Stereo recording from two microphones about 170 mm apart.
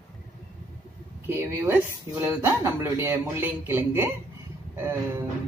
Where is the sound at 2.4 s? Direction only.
15° right (ahead or behind).